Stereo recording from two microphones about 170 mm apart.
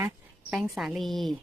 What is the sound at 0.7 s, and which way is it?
Speech, centre (ahead or behind).